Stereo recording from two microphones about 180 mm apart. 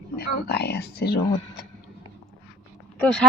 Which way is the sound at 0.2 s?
65° left (ahead or behind).